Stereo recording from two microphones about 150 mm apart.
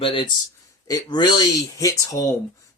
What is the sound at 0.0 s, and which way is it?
Speech, 35° left (ahead or behind).